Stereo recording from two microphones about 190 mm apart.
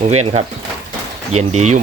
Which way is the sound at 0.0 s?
35° right (ahead or behind).